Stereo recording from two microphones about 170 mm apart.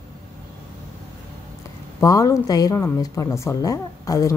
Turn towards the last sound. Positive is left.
turn(degrees=20)  # may be behind; listen again after turning